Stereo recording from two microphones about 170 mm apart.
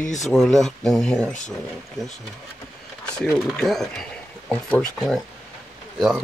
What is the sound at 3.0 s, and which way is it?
Speech, 5° left (ahead or behind).